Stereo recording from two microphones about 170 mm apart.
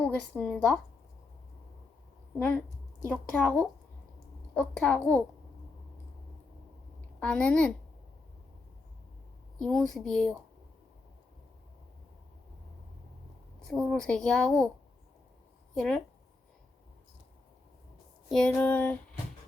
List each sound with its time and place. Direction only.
0.0 s speech: 5° left (ahead or behind)
3.1 s a woman's voice: 10° left (ahead or behind)
7.2 s a woman's voice: 5° left (ahead or behind)
9.6 s speech: 5° left (ahead or behind)
13.7 s speech: 5° left (ahead or behind)
15.7 s speech: 5° left (ahead or behind)
18.3 s a sound: 5° left (ahead or behind)
18.5 s a woman's voice: 10° left (ahead or behind)